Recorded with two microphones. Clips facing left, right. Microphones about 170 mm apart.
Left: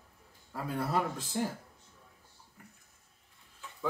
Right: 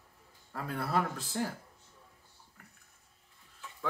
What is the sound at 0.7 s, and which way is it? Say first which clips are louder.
Speech: even; 15° left (ahead or behind).